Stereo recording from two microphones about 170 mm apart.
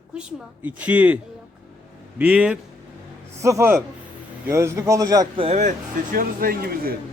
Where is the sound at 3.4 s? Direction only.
15° right (ahead or behind).